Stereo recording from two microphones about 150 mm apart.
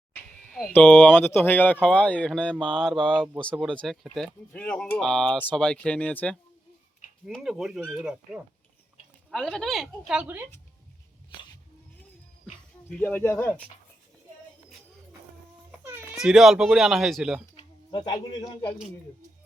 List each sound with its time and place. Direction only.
0.5 s speech: 10° left (ahead or behind)
7.3 s speech: centre (ahead or behind)
9.3 s speech: 5° left (ahead or behind)
10.1 s a woman's voice: 10° right (ahead or behind)
12.9 s speech: 10° left (ahead or behind)
15.8 s baby cry: 15° right (ahead or behind)
16.1 s speech: 5° right (ahead or behind)
17.6 s a sound: 30° left (ahead or behind)